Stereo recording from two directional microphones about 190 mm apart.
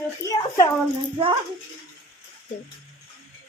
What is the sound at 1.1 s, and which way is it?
Speech, 25° right (ahead or behind).